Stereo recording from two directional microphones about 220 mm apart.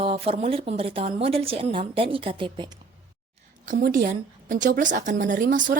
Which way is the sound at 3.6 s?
35° right (ahead or behind).